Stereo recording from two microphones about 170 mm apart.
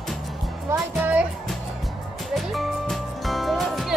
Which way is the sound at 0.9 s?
5° right (ahead or behind).